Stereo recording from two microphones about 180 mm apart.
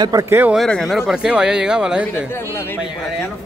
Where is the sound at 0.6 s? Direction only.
Centre (ahead or behind).